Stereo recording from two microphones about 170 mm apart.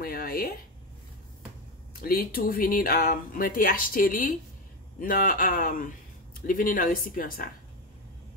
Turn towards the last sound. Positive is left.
turn(degrees=55)  # may be behind; listen again after turning